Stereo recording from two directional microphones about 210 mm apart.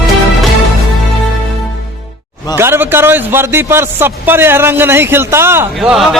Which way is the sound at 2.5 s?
10° right (ahead or behind).